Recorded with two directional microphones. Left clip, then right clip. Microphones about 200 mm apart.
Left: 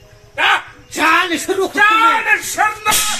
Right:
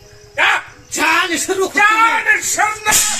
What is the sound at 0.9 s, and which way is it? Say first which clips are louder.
Speech: left 1 dB; 15° left (ahead or behind).